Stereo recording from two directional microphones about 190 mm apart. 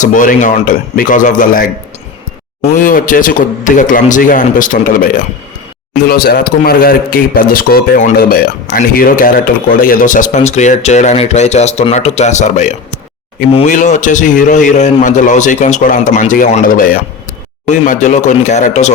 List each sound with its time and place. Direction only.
0.0 s a man's voice: 45° left (ahead or behind)